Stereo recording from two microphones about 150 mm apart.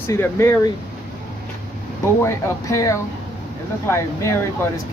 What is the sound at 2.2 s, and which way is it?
Speech, 20° left (ahead or behind).